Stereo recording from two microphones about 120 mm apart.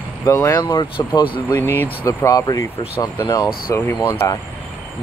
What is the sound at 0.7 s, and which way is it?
Speech, 40° left (ahead or behind).